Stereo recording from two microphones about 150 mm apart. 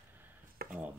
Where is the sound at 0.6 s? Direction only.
90° right.